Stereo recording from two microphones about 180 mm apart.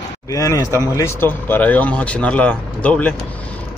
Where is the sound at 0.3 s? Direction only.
20° left (ahead or behind).